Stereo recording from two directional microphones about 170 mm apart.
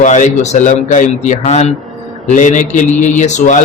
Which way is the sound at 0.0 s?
45° left (ahead or behind).